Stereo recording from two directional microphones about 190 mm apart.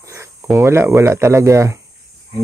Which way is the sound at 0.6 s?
15° right (ahead or behind).